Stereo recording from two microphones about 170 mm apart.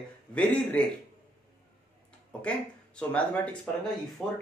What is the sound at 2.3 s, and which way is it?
A man's voice, 5° left (ahead or behind).